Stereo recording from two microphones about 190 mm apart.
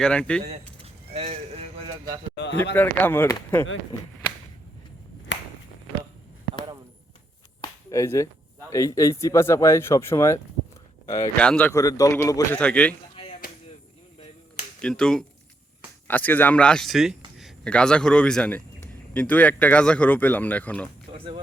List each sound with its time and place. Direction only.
0.0 s speech: 5° left (ahead or behind)
1.1 s a sound: 35° right (ahead or behind)
2.3 s speech: 70° left (ahead or behind)
2.7 s speech: 10° left (ahead or behind)
7.6 s a sound: 15° left (ahead or behind)
8.7 s speech: 15° left (ahead or behind)
14.8 s speech: 5° left (ahead or behind)